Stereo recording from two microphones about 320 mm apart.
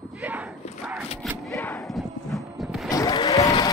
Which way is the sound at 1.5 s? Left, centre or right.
Centre.